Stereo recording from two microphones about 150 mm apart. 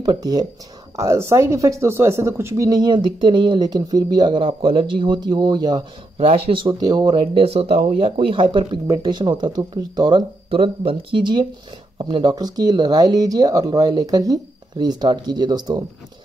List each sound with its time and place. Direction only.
0.0 s speech: 25° right (ahead or behind)
6.1 s speech: 40° right (ahead or behind)